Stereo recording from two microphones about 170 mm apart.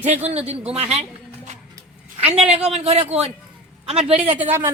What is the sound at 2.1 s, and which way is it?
A woman's voice, 40° right (ahead or behind).